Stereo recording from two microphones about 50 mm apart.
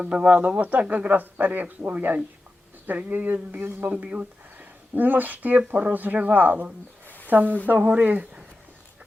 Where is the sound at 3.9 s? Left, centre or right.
Right.